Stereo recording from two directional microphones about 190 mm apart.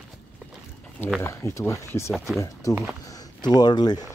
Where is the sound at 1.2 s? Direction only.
15° left (ahead or behind).